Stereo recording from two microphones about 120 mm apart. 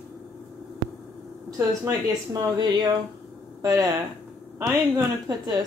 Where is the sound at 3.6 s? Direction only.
25° right (ahead or behind).